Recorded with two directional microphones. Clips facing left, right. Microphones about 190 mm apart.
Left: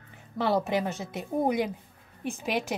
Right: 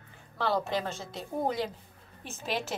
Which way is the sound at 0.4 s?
20° left (ahead or behind).